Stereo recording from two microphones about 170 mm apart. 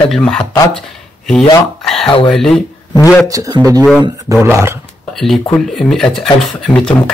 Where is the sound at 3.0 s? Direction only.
15° left (ahead or behind).